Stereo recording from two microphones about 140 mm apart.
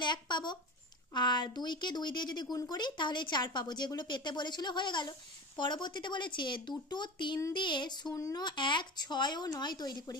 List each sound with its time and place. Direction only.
0.0 s speech: 35° left (ahead or behind)